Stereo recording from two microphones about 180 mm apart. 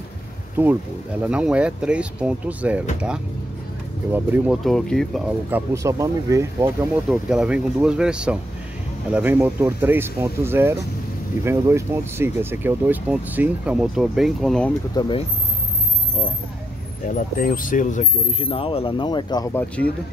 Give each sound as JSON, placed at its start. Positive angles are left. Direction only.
{"t": 0.6, "sound": "speech", "side_deg": -10}
{"t": 4.1, "sound": "speech", "side_deg": -5}
{"t": 5.8, "sound": "speech", "side_deg": -15}
{"t": 7.1, "sound": "speech", "side_deg": -5}
{"t": 15.0, "sound": "speech", "side_deg": 25}
{"t": 17.4, "sound": "speech", "side_deg": 50}
{"t": 18.4, "sound": "speech", "side_deg": 30}
{"t": 19.5, "sound": "speech", "side_deg": 10}